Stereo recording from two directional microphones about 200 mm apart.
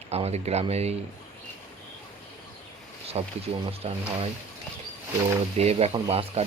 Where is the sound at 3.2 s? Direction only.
30° right (ahead or behind).